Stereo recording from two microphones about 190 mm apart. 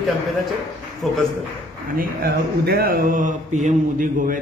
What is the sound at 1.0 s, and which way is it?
Speech, centre (ahead or behind).